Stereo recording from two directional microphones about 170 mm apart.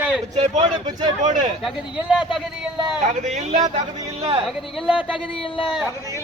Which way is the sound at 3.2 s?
45° right (ahead or behind).